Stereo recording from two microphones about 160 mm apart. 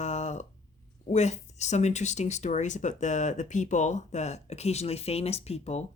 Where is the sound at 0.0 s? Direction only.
45° left (ahead or behind).